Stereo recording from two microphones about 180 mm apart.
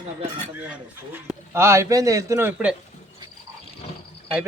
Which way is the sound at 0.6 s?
10° right (ahead or behind).